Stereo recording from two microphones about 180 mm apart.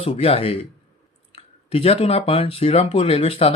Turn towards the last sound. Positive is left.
turn(degrees=30)  # may be behind; listen again after turning